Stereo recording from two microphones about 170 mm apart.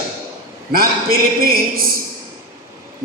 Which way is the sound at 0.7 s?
60° right (ahead or behind).